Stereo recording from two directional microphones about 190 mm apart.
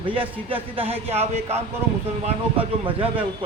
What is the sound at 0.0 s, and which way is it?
A man's voice, 30° right (ahead or behind).